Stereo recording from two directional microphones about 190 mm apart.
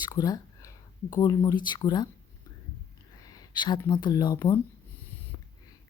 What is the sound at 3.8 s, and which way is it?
Speech, 25° left (ahead or behind).